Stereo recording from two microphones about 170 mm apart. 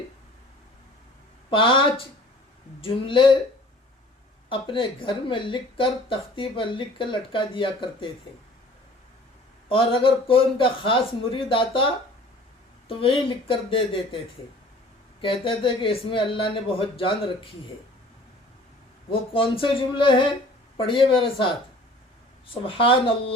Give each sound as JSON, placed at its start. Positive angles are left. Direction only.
{"t": 1.5, "sound": "speech", "side_deg": 30}
{"t": 4.4, "sound": "speech", "side_deg": 30}
{"t": 9.6, "sound": "speech", "side_deg": 30}
{"t": 12.9, "sound": "speech", "side_deg": 30}
{"t": 15.2, "sound": "speech", "side_deg": 30}
{"t": 19.1, "sound": "speech", "side_deg": 30}
{"t": 22.6, "sound": "speech", "side_deg": 30}